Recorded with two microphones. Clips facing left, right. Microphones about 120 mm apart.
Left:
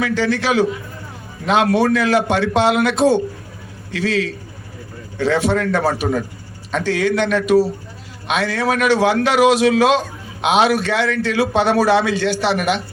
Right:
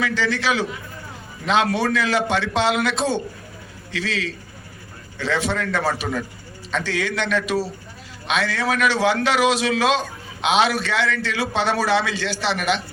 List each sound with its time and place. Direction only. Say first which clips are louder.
0.0 s a man's voice: left 4 dB; 50° left (ahead or behind)
12.5 s speech: left 2 dB; 10° left (ahead or behind)